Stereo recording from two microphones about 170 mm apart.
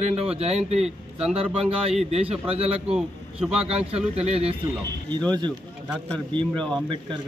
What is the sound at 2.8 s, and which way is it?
Speech, 5° right (ahead or behind).